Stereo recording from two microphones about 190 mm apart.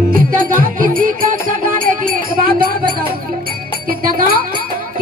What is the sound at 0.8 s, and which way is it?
Music, 45° right (ahead or behind).